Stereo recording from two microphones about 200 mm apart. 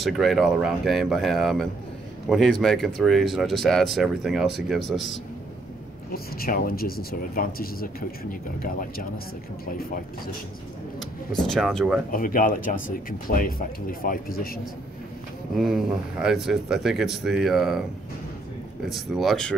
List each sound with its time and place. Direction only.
0.0 s a man's voice: centre (ahead or behind)
6.1 s speech: 45° left (ahead or behind)
11.0 s speech: centre (ahead or behind)
12.1 s speech: 45° left (ahead or behind)
15.5 s speech: centre (ahead or behind)
18.9 s speech: centre (ahead or behind)